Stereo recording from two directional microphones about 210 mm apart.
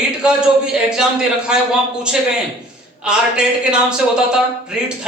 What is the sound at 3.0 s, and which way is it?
Speech, 5° right (ahead or behind).